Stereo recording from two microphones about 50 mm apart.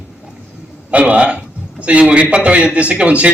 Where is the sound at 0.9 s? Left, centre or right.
Right.